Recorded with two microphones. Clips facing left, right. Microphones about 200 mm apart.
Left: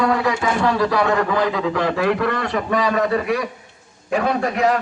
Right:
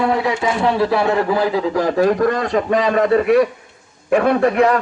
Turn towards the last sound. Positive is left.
turn(degrees=-55)  # may be behind; listen again after turning